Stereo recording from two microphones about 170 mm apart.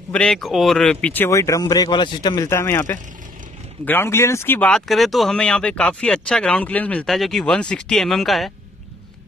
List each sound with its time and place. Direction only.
0.1 s speech: 5° left (ahead or behind)